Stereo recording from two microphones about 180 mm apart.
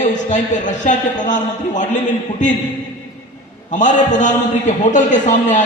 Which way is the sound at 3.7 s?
40° left (ahead or behind).